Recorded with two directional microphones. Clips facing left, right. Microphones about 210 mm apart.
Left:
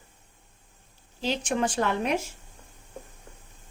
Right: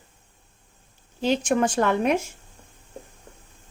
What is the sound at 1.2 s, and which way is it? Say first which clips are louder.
Speech: right 5 dB; 50° right (ahead or behind).